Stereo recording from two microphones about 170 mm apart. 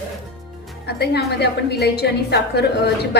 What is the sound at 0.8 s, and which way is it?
A woman's voice, 75° left (ahead or behind).